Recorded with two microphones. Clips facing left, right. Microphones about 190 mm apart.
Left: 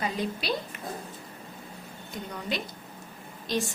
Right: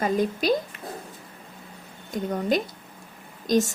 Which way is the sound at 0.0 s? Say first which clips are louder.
Right 7 dB; 45° right (ahead or behind).